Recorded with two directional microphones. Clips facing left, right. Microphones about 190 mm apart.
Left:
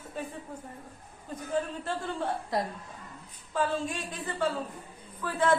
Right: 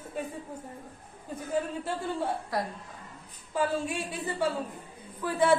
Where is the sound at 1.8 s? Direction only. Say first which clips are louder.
Right 1 dB; 10° right (ahead or behind).